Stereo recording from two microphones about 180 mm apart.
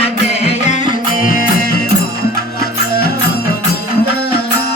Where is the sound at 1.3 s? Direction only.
55° left (ahead or behind).